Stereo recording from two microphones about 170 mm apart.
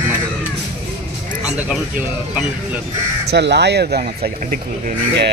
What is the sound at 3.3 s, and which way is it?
Speech, 80° right.